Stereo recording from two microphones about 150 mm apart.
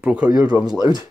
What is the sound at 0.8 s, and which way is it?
Speech, 25° right (ahead or behind).